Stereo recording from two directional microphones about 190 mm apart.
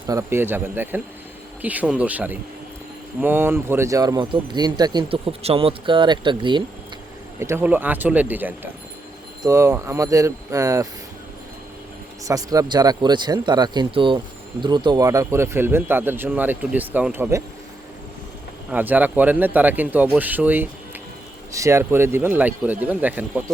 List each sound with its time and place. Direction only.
0.1 s speech: 15° right (ahead or behind)
7.3 s speech: 15° right (ahead or behind)
12.2 s speech: 20° right (ahead or behind)
18.7 s speech: 10° right (ahead or behind)